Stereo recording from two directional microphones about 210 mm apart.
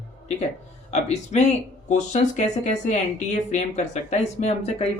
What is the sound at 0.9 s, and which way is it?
Speech, 30° left (ahead or behind).